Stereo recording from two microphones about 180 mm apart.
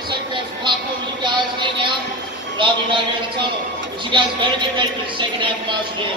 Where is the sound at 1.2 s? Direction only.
25° right (ahead or behind).